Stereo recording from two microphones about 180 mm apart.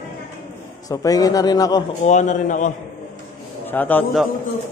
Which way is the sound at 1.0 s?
20° left (ahead or behind).